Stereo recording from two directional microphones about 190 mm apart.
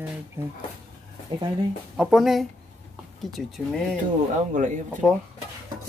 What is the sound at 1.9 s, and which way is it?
Speech, centre (ahead or behind).